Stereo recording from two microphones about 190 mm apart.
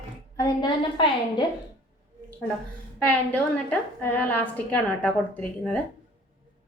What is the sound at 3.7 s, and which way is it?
A woman's voice, 10° left (ahead or behind).